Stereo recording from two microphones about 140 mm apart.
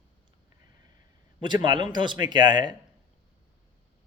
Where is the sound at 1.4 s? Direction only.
35° right (ahead or behind).